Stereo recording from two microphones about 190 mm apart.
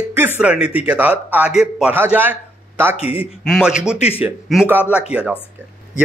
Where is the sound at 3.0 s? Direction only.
30° left (ahead or behind).